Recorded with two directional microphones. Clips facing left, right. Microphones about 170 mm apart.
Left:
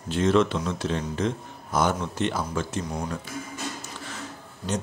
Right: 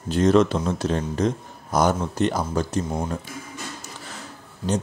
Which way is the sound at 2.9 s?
25° right (ahead or behind).